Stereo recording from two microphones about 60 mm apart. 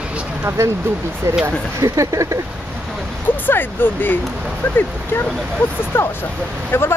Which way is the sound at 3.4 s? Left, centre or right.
Left.